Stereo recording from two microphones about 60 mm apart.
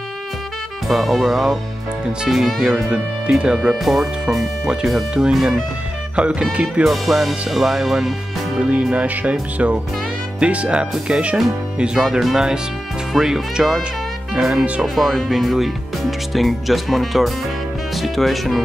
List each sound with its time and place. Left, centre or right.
0.8 s speech: centre
2.9 s speech: centre
3.5 s speech: centre
6.8 s speech: centre
8.6 s speech: right
12.0 s speech: centre
15.0 s speech: centre